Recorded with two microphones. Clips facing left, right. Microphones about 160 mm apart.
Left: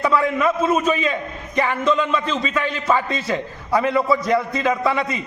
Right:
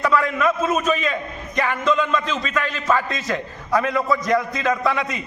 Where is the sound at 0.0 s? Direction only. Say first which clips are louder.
Left 1 dB; 10° left (ahead or behind).